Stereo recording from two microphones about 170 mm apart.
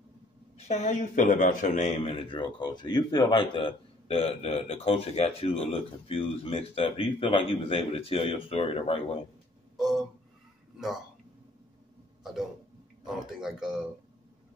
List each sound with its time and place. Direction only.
0.6 s speech: 40° left (ahead or behind)
9.8 s a sound: centre (ahead or behind)
13.0 s speech: 5° right (ahead or behind)